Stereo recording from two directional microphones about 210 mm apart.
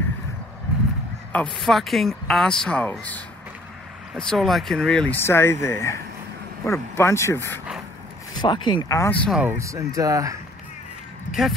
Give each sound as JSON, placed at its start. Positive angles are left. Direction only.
{"t": 1.3, "sound": "a woman's voice", "side_deg": 5}
{"t": 8.4, "sound": "speech", "side_deg": 20}
{"t": 9.4, "sound": "speech", "side_deg": -10}